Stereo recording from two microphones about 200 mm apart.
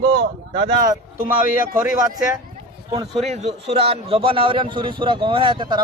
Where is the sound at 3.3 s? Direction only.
35° right (ahead or behind).